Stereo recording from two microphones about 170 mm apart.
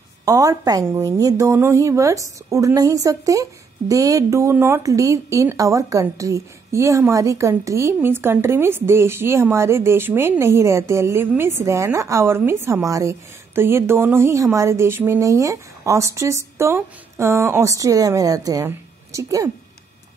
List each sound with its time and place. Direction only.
0.2 s a woman's voice: 20° right (ahead or behind)